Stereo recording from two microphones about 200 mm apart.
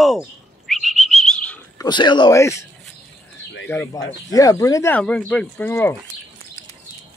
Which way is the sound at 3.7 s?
10° left (ahead or behind).